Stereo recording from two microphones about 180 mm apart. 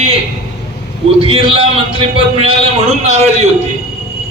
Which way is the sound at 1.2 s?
30° right (ahead or behind).